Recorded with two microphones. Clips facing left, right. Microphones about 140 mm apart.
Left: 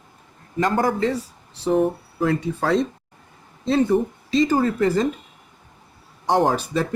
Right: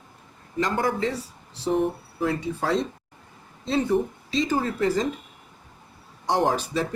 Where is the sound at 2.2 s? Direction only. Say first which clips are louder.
Left 4 dB; 60° left (ahead or behind).